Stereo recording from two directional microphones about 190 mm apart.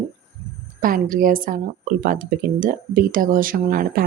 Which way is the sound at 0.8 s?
45° right (ahead or behind).